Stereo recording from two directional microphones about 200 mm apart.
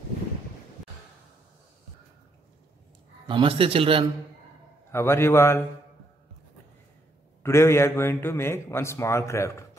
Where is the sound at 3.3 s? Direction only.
25° right (ahead or behind).